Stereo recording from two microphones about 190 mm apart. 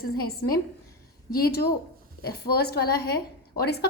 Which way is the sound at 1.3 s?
55° left (ahead or behind).